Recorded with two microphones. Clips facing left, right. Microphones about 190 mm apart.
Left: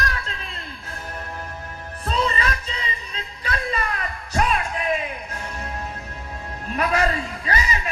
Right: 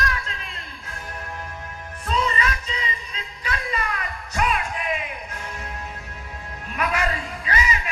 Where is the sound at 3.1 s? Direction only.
30° left (ahead or behind).